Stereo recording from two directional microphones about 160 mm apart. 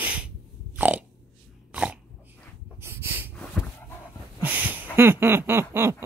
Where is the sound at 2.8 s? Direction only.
15° right (ahead or behind).